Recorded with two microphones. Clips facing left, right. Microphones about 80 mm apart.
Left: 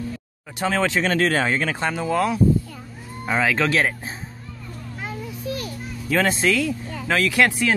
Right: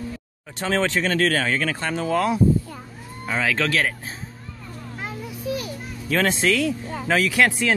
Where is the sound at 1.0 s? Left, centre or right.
Left; by 2.2 s centre.